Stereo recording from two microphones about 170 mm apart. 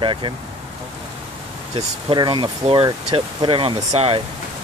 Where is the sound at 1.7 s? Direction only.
30° right (ahead or behind).